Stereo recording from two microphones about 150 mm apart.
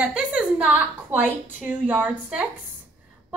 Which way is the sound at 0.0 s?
5° right (ahead or behind).